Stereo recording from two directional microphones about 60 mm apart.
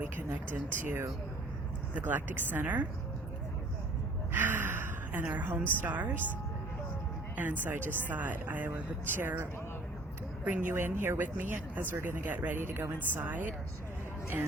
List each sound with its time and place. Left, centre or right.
0.8 s a woman's voice: right
4.3 s gasp: right
5.2 s a woman's voice: right
7.3 s a woman's voice: right
12.6 s a woman's voice: right